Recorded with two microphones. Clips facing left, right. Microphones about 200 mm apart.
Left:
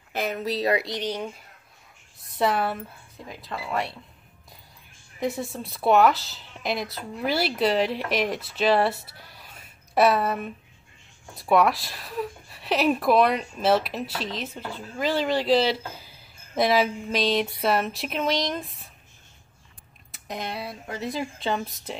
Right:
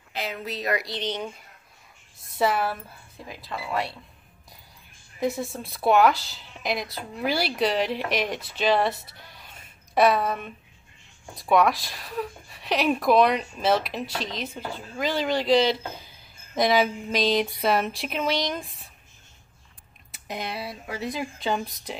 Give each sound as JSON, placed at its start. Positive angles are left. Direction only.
{"t": 0.1, "sound": "speech", "side_deg": 50}
{"t": 0.8, "sound": "speech", "side_deg": 10}
{"t": 2.3, "sound": "speech", "side_deg": 0}
{"t": 5.2, "sound": "speech", "side_deg": 0}
{"t": 20.1, "sound": "speech", "side_deg": 0}